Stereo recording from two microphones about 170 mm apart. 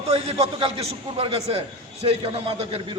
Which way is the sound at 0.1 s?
35° right (ahead or behind).